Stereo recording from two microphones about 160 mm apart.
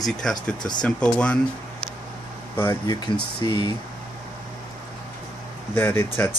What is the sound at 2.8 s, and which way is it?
Speech, 30° left (ahead or behind).